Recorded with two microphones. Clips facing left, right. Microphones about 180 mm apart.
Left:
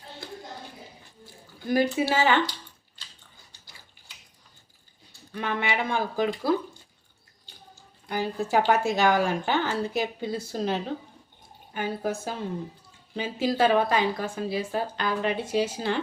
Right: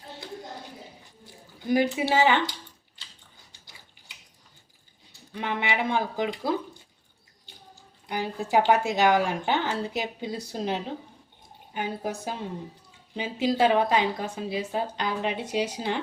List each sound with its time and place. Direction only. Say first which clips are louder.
1.5 s speech: even; 20° right (ahead or behind)
5.3 s speech: even; 20° right (ahead or behind)
8.0 s speech: left 2 dB; 15° right (ahead or behind)